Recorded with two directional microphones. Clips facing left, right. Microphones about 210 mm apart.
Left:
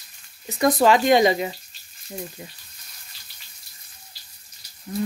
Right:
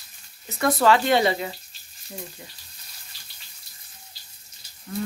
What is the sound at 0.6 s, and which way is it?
Speech, 15° left (ahead or behind).